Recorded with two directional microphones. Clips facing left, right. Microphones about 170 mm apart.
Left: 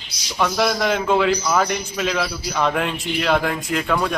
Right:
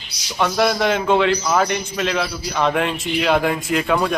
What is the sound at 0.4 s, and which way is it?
A man's voice, centre (ahead or behind).